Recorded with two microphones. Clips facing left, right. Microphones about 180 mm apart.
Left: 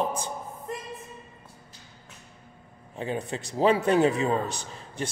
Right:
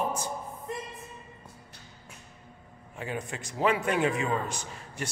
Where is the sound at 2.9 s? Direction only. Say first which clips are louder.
Left 4 dB; 30° left (ahead or behind).